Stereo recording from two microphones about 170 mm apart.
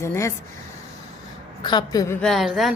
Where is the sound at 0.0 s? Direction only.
15° left (ahead or behind).